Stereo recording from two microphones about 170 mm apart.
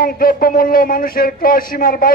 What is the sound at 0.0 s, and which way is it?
A man's voice, 60° left (ahead or behind).